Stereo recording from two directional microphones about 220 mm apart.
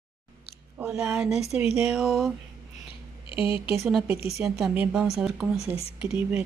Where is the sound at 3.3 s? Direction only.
25° left (ahead or behind).